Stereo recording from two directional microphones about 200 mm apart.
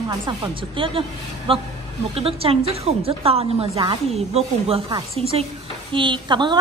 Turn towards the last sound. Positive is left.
turn(degrees=-25)  # may be behind; listen again after turning